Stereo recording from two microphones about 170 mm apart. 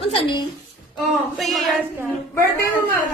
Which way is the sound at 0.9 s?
Centre (ahead or behind).